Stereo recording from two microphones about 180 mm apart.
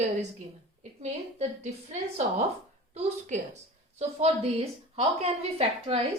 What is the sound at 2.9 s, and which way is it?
A woman's voice, 40° right (ahead or behind).